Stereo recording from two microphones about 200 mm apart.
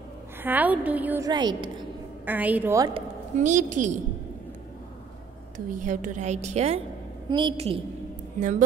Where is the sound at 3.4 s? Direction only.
40° right (ahead or behind).